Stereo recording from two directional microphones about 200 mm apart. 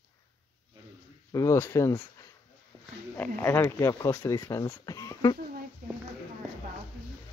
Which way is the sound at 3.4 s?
10° left (ahead or behind).